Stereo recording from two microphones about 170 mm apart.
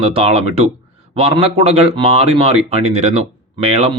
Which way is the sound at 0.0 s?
35° right (ahead or behind).